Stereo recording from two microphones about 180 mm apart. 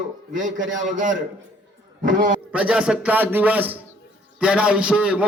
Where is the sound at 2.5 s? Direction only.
5° right (ahead or behind).